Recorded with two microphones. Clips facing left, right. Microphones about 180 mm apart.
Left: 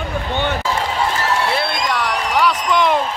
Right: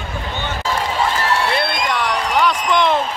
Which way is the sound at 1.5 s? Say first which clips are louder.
Even; 5° left (ahead or behind).